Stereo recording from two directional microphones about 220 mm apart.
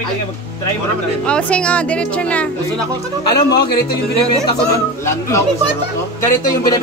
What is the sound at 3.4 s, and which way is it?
Speech, 45° left (ahead or behind).